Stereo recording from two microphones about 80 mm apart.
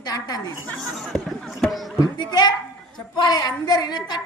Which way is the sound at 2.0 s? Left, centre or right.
Left.